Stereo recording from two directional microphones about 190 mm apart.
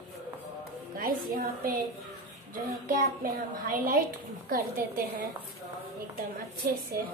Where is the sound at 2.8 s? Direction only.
45° right (ahead or behind).